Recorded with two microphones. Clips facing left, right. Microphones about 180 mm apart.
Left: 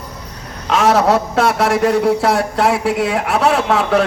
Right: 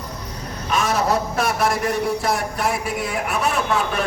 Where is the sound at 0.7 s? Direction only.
80° left.